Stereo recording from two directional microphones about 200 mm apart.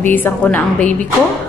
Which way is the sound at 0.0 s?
10° left (ahead or behind).